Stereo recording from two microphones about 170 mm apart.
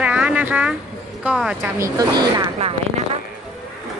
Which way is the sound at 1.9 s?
25° right (ahead or behind).